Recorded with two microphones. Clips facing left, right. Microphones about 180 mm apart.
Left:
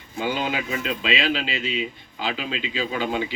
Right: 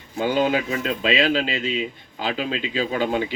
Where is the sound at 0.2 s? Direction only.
45° right (ahead or behind).